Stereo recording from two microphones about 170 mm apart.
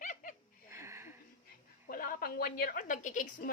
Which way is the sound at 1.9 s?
55° left (ahead or behind).